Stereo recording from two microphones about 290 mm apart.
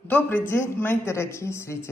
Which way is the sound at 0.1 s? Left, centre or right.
Centre.